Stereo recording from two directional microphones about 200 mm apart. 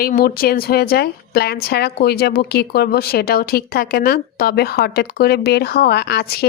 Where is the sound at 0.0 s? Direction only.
50° left (ahead or behind).